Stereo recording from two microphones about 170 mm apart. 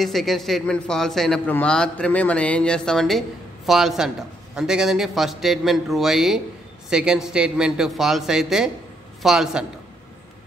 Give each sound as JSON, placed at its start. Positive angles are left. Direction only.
{"t": 0.0, "sound": "a man's voice", "side_deg": 0}